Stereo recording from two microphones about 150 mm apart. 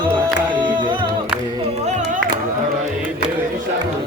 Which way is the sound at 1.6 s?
50° right (ahead or behind).